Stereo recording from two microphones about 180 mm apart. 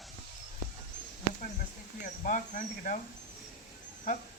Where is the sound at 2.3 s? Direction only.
45° left (ahead or behind).